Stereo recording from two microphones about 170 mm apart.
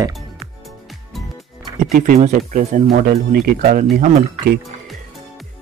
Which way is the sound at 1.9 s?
55° right (ahead or behind).